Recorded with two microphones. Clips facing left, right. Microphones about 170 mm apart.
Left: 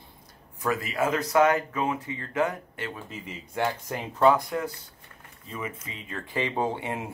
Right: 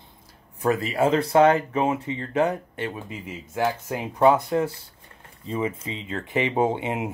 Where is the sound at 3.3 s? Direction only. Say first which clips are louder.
Right 3 dB; 5° right (ahead or behind).